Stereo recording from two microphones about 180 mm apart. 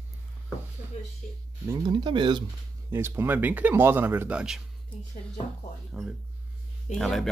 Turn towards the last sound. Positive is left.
turn(degrees=0)  # may be behind; listen again after turning